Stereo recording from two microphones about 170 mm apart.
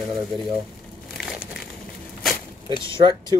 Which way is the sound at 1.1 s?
Centre (ahead or behind).